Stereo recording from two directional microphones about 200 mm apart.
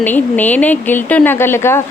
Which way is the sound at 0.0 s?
10° left (ahead or behind).